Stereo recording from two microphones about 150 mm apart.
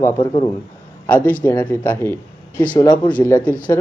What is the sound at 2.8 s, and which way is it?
Speech, 30° left (ahead or behind).